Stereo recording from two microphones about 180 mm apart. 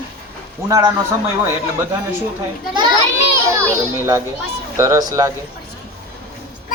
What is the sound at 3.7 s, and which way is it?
Speech, 15° right (ahead or behind).